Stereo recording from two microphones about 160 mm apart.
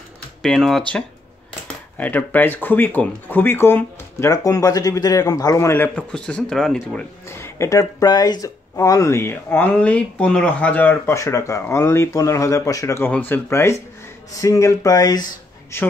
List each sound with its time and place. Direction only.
0.4 s speech: centre (ahead or behind)
7.2 s speech: 15° left (ahead or behind)